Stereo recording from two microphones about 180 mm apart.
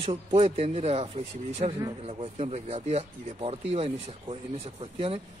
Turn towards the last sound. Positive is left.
turn(degrees=-30)  # may be behind; listen again after turning